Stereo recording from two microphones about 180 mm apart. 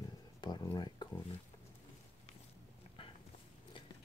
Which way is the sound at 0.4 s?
25° left (ahead or behind).